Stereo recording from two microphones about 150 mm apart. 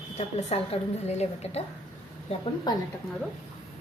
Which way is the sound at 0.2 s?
40° left (ahead or behind).